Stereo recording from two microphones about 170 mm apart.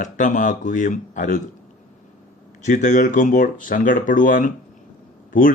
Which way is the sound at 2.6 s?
50° left (ahead or behind).